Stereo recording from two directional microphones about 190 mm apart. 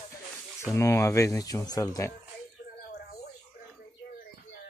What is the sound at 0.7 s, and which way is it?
Speech, 15° left (ahead or behind).